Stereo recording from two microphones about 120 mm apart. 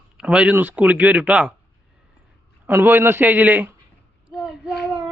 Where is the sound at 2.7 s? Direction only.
20° right (ahead or behind).